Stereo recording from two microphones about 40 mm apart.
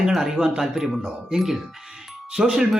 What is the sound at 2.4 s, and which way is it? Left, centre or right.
Speech, right.